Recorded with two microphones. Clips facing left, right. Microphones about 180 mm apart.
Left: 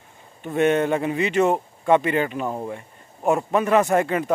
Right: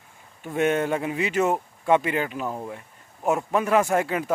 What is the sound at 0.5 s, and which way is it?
Speech, 5° right (ahead or behind).